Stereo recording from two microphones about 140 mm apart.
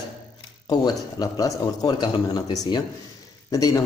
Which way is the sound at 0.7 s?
30° left (ahead or behind).